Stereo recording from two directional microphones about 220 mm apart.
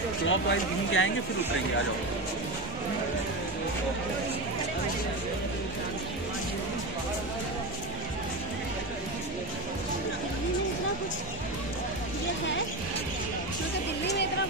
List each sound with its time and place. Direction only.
0.3 s speech: 60° left (ahead or behind)